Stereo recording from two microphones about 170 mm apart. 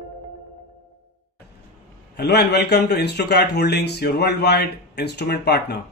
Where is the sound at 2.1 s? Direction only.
75° left (ahead or behind).